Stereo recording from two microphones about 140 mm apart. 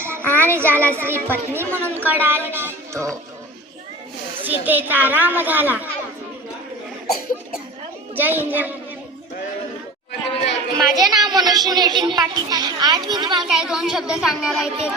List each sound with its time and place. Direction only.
0.0 s child singing: 15° right (ahead or behind)
0.3 s a child's voice: 15° right (ahead or behind)
4.4 s speech: 15° right (ahead or behind)
8.1 s speech: 15° right (ahead or behind)
10.8 s speech: centre (ahead or behind)
11.3 s a child's voice: 30° right (ahead or behind)
13.5 s speech: 5° right (ahead or behind)